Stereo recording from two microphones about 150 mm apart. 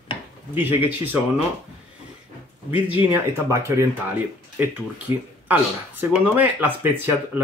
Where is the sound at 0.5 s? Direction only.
15° right (ahead or behind).